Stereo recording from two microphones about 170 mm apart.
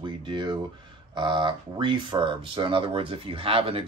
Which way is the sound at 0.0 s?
25° right (ahead or behind).